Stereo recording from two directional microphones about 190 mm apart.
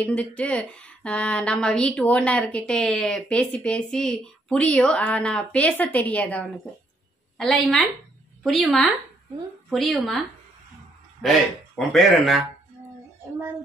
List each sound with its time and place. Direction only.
0.0 s speech: 5° left (ahead or behind)
11.2 s speech: centre (ahead or behind)